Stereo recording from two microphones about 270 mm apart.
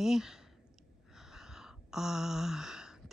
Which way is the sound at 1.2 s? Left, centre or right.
Centre.